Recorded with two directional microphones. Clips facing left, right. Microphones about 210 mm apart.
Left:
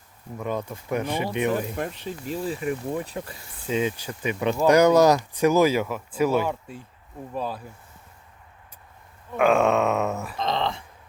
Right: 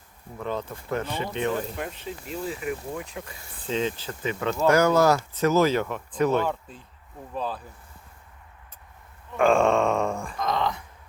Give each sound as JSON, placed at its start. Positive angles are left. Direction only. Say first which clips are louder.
{"t": 0.3, "sound": "speech", "louder": "left 2 dB", "side_deg": 15}
{"t": 1.7, "sound": "speech", "louder": "left 3 dB", "side_deg": 40}
{"t": 3.7, "sound": "speech", "louder": "left 2 dB", "side_deg": 10}
{"t": 9.4, "sound": "a sound", "louder": "even", "side_deg": 5}
{"t": 10.3, "sound": "speech", "louder": "even", "side_deg": 25}